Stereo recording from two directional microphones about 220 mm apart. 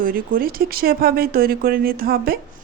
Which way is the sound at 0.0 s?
40° right (ahead or behind).